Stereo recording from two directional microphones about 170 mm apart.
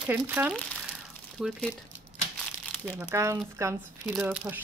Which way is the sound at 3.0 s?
15° right (ahead or behind).